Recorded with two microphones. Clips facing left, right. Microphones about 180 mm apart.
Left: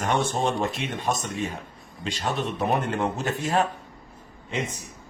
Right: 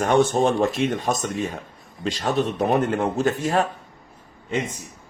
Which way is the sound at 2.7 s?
45° right (ahead or behind).